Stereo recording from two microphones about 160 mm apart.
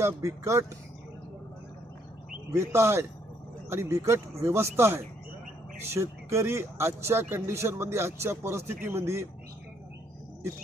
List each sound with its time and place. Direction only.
0.0 s speech: 20° right (ahead or behind)
2.5 s speech: 15° right (ahead or behind)